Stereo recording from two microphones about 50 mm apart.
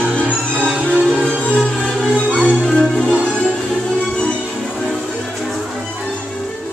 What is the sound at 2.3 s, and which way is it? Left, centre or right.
Music, centre.